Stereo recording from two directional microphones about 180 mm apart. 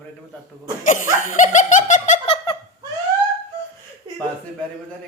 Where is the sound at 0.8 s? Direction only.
45° left (ahead or behind).